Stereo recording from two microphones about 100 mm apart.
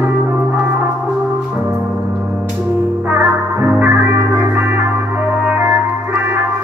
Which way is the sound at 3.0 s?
20° right (ahead or behind).